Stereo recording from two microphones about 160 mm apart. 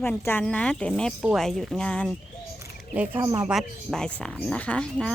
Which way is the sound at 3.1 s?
30° right (ahead or behind).